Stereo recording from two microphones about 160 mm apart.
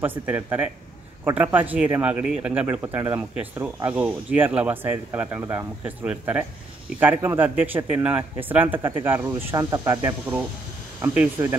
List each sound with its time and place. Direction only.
0.0 s speech: 10° right (ahead or behind)